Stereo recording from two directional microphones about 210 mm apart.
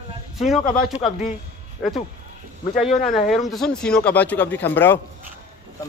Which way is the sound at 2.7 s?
35° left (ahead or behind).